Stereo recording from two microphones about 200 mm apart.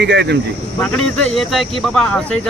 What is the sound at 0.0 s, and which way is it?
Speech, 55° right (ahead or behind).